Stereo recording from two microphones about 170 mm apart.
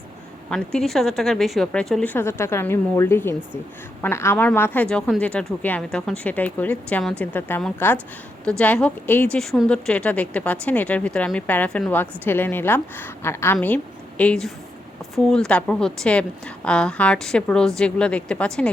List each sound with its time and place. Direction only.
0.5 s a woman's voice: 5° left (ahead or behind)